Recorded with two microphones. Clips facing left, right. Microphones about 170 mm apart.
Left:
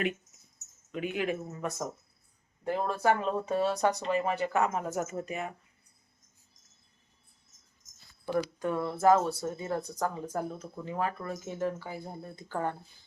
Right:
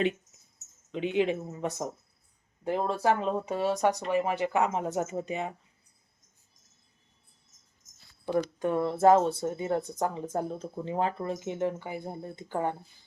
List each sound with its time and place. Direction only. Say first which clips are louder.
0.9 s speech: right 5 dB; 25° right (ahead or behind)
2.6 s speech: right 1 dB; 25° right (ahead or behind)
8.5 s speech: right 4 dB; 25° right (ahead or behind)